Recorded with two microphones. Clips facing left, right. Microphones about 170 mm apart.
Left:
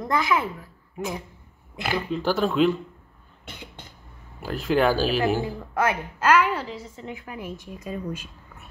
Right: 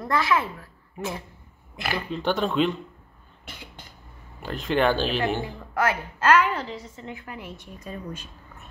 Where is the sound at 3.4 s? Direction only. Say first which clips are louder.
Left 2 dB; 20° left (ahead or behind).